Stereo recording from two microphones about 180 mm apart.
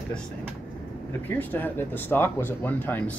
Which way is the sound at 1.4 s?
10° left (ahead or behind).